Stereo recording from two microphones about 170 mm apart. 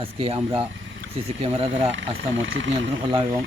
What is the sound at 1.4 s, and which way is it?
Speech, 35° right (ahead or behind).